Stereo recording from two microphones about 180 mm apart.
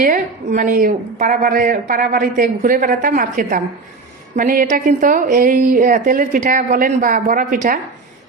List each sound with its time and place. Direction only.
0.0 s a woman's voice: 45° right (ahead or behind)